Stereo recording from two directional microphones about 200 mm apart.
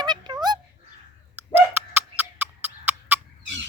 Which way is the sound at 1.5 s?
10° right (ahead or behind).